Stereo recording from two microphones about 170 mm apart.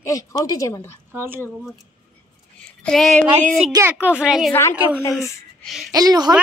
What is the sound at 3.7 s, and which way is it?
Speech, 15° right (ahead or behind).